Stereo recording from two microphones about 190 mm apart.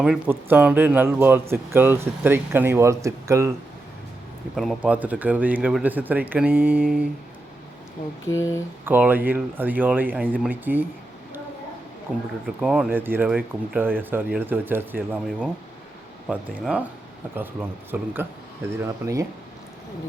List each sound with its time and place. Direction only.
0.0 s speech: 5° right (ahead or behind)
4.5 s speech: centre (ahead or behind)
8.3 s mantra: 15° left (ahead or behind)
8.8 s speech: 10° right (ahead or behind)
12.6 s speech: 5° right (ahead or behind)